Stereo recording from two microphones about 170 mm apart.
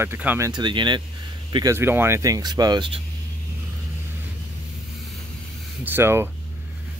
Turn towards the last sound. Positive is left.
turn(degrees=-15)  # may be behind; listen again after turning